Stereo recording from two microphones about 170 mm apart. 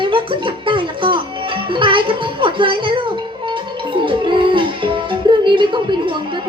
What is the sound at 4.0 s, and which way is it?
Music, 30° right (ahead or behind).